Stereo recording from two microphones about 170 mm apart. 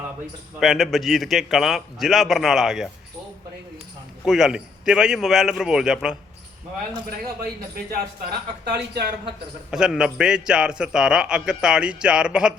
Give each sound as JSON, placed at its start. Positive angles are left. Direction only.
{"t": 0.6, "sound": "a man's voice", "side_deg": 0}
{"t": 4.3, "sound": "a man's voice", "side_deg": 0}
{"t": 7.9, "sound": "speech", "side_deg": -70}
{"t": 9.7, "sound": "a man's voice", "side_deg": -5}